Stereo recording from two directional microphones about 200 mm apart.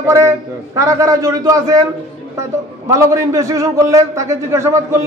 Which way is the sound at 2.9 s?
15° right (ahead or behind).